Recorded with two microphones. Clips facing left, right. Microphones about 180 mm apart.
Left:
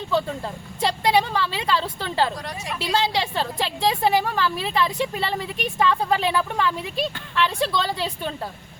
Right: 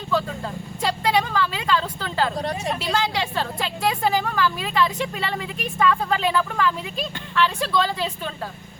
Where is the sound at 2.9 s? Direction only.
25° left (ahead or behind).